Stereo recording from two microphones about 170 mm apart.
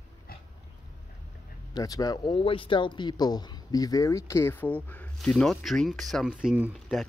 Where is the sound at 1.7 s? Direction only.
20° left (ahead or behind).